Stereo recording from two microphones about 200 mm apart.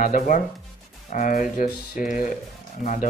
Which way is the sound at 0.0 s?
45° left (ahead or behind).